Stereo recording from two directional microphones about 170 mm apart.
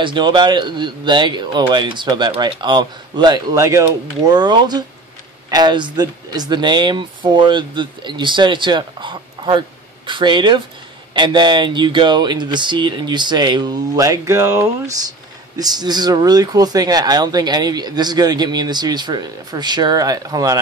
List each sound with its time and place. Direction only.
0.0 s speech: 30° right (ahead or behind)